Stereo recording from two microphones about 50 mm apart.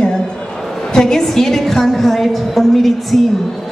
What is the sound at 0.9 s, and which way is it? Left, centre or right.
A woman's voice, centre.